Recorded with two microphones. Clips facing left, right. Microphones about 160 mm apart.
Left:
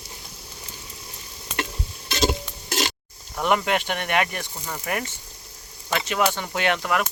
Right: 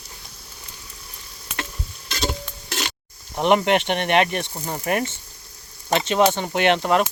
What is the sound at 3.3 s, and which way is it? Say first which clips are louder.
Speech: right 4 dB; 25° right (ahead or behind).